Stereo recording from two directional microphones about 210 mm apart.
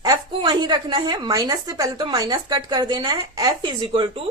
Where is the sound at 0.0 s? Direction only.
20° right (ahead or behind).